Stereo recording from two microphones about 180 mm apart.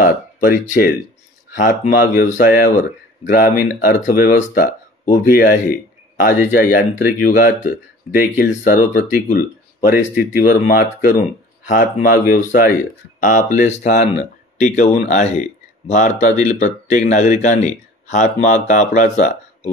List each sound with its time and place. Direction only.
0.0 s speech: 50° left (ahead or behind)